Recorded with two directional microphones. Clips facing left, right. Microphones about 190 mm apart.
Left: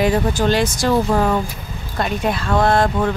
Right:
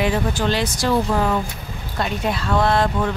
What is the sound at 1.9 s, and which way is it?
Speech, 50° left (ahead or behind).